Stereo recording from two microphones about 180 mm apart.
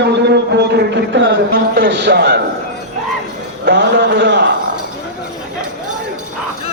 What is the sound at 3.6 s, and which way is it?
Speech, 75° right (ahead or behind).